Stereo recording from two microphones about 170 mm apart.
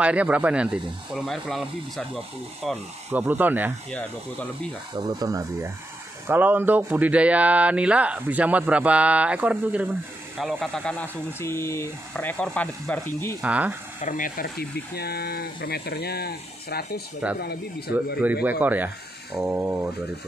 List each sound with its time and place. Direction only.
0.0 s speech: 5° right (ahead or behind)
3.1 s speech: 10° right (ahead or behind)
4.9 s speech: 20° right (ahead or behind)
10.4 s speech: 5° left (ahead or behind)
13.4 s speech: 10° right (ahead or behind)
14.0 s speech: 50° left (ahead or behind); by 17.9 s 70° left (ahead or behind)
18.2 s speech: 10° right (ahead or behind)